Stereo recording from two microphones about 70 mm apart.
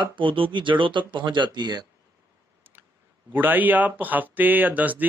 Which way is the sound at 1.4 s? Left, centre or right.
Right.